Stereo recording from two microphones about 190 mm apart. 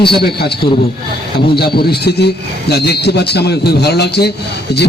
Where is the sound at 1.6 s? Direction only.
55° left (ahead or behind).